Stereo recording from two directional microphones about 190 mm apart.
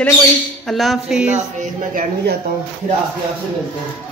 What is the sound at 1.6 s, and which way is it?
Speech, 45° right (ahead or behind).